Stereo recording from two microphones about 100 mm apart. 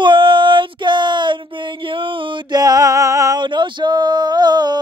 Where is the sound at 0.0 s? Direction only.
55° right (ahead or behind).